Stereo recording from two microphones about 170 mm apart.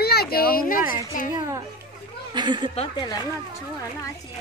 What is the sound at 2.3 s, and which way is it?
Speech, 25° right (ahead or behind).